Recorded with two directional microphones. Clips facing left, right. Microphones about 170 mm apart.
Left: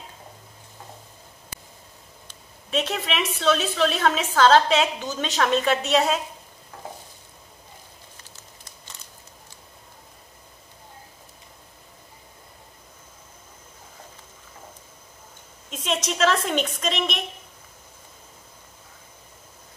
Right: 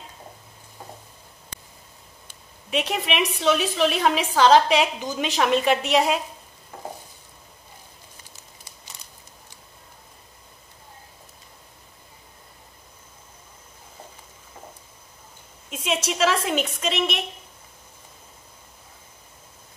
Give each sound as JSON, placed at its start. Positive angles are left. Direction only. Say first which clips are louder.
{"t": 2.2, "sound": "a woman's voice", "louder": "even", "side_deg": -10}
{"t": 8.2, "sound": "a sound", "louder": "left 1 dB", "side_deg": -10}
{"t": 15.7, "sound": "a woman's voice", "louder": "right 1 dB", "side_deg": -10}